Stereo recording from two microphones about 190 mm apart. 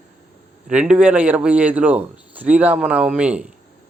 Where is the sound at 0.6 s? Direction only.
5° right (ahead or behind).